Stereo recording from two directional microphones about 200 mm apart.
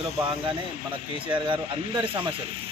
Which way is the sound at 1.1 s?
25° right (ahead or behind).